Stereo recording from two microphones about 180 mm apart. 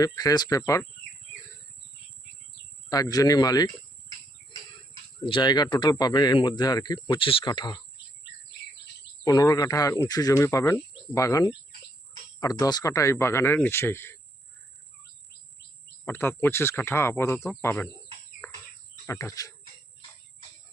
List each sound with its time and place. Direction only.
0.0 s speech: 20° left (ahead or behind)
2.9 s speech: 20° left (ahead or behind)
5.2 s speech: 25° left (ahead or behind)
9.2 s speech: 20° left (ahead or behind)
16.0 s speech: 10° left (ahead or behind)
19.0 s speech: 15° left (ahead or behind)